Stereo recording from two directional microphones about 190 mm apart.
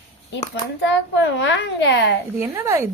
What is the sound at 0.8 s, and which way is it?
Child singing, 70° left (ahead or behind).